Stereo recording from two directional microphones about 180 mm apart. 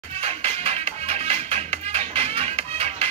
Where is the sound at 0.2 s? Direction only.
35° right (ahead or behind).